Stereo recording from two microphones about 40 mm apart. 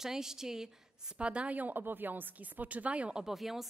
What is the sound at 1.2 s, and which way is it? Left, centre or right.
Speech, right.